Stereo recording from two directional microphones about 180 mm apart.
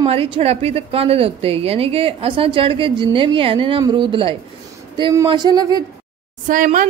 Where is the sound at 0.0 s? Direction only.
30° right (ahead or behind).